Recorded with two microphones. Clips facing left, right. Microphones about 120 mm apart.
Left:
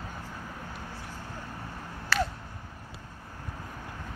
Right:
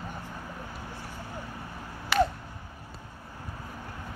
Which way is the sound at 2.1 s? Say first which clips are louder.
Right 5 dB; 15° right (ahead or behind).